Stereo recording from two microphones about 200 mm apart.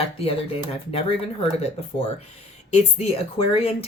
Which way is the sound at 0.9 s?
30° left (ahead or behind).